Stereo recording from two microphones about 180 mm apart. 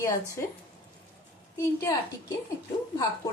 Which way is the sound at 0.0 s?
15° left (ahead or behind).